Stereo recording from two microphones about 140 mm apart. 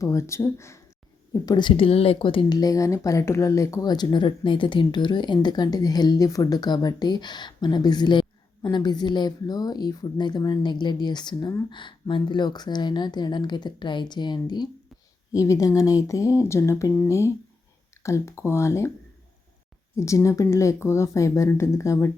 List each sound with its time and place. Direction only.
0.0 s speech: 20° left (ahead or behind)
1.3 s speech: 30° left (ahead or behind)
20.0 s speech: 20° left (ahead or behind)